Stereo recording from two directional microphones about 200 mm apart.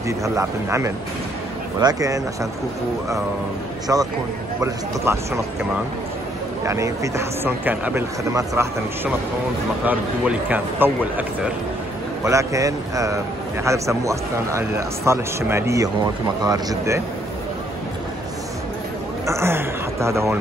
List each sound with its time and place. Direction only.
0.2 s speech: 15° right (ahead or behind)
3.8 s speech: 20° right (ahead or behind)
6.6 s speech: 15° right (ahead or behind)
12.3 s speech: 15° right (ahead or behind)
19.2 s a man's voice: 15° right (ahead or behind)